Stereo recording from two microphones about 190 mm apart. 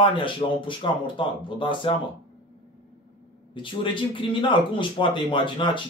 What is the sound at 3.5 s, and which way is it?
Speech, 25° left (ahead or behind).